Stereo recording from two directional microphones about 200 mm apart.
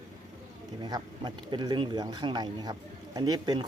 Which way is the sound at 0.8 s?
20° right (ahead or behind).